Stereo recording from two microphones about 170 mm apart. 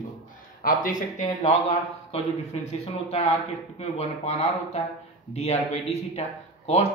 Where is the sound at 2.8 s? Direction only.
40° left (ahead or behind).